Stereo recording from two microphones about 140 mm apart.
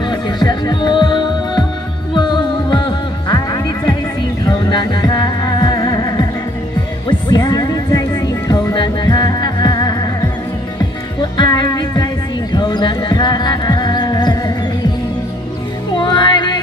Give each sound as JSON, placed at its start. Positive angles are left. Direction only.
{"t": 0.0, "sound": "music", "side_deg": 30}
{"t": 11.3, "sound": "music", "side_deg": 30}
{"t": 16.0, "sound": "music", "side_deg": 35}